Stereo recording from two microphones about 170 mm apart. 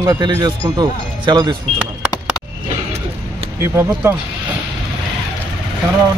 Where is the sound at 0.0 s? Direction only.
20° right (ahead or behind).